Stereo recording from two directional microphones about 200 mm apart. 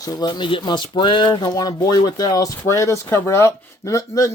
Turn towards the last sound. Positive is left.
turn(degrees=15)  # may be behind; listen again after turning